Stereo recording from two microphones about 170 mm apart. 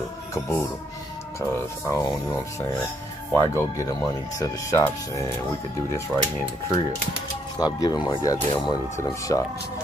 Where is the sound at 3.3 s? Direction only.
15° left (ahead or behind).